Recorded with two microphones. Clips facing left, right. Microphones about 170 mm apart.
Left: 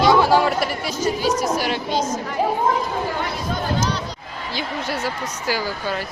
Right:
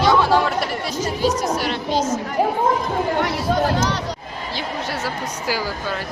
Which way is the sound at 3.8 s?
80° right.